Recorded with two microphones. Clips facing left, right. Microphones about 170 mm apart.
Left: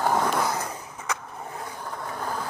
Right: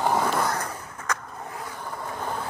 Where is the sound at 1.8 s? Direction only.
Centre (ahead or behind).